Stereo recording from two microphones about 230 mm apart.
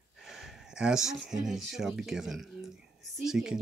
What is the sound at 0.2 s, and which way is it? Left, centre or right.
Speech, centre.